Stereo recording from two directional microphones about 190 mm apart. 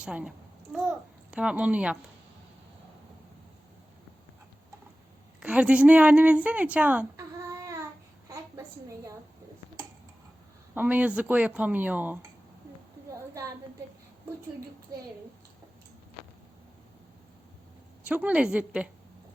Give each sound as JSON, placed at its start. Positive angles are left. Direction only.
{"t": 0.0, "sound": "a child's voice", "side_deg": -5}
{"t": 5.4, "sound": "a woman's voice", "side_deg": -5}
{"t": 8.3, "sound": "a sound", "side_deg": -15}
{"t": 10.8, "sound": "speech", "side_deg": -10}
{"t": 13.1, "sound": "a sound", "side_deg": -15}
{"t": 14.9, "sound": "a child's voice", "side_deg": -20}
{"t": 18.0, "sound": "speech", "side_deg": -5}